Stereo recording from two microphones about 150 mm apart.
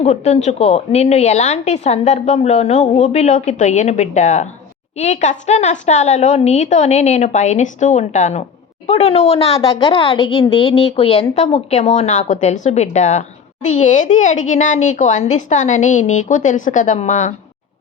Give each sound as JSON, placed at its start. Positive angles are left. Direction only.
{"t": 0.0, "sound": "a woman's voice", "side_deg": 50}